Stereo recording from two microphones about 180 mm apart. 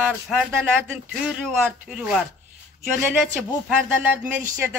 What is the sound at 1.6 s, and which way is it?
A man's voice, 5° right (ahead or behind).